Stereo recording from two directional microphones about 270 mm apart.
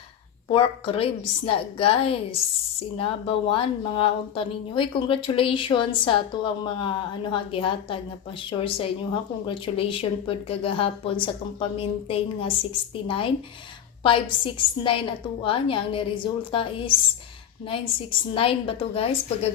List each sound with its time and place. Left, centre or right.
0.5 s speech: centre
18.3 s speech: centre